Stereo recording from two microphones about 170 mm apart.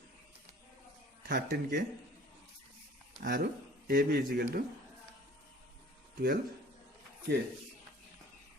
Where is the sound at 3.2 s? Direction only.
65° right (ahead or behind).